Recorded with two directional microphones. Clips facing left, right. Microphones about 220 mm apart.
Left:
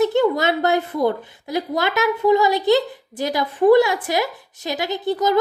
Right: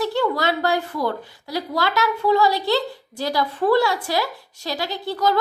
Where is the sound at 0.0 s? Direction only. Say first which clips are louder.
Left 4 dB; 20° left (ahead or behind).